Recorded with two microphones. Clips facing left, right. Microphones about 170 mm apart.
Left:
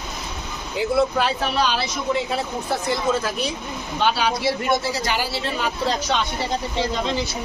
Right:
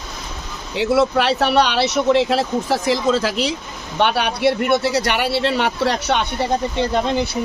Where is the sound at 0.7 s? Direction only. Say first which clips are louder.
Right 4 dB; 90° right.